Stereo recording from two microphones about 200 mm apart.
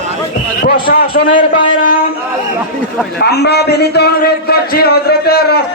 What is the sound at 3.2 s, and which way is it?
A man's voice, 55° left (ahead or behind).